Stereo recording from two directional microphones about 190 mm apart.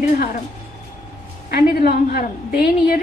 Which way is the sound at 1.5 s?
55° left (ahead or behind).